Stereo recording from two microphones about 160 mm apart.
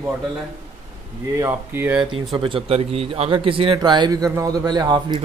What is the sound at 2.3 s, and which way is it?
A man's voice, 35° right (ahead or behind).